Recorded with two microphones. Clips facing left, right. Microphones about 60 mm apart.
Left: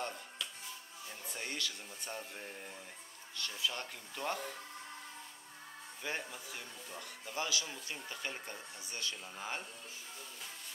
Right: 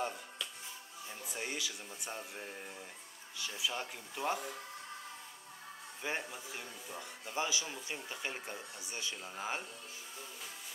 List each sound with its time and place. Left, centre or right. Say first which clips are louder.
0.0 s music: right 2 dB; centre
1.2 s speech: right 1 dB; centre
6.0 s speech: right 2 dB; centre